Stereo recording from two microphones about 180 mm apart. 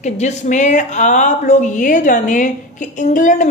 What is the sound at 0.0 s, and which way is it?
A woman's voice, 40° left (ahead or behind).